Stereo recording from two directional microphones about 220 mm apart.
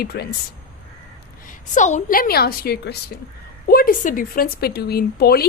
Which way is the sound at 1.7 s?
35° left (ahead or behind).